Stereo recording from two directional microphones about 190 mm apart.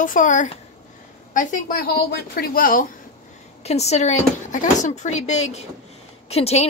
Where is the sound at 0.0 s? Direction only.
45° left (ahead or behind).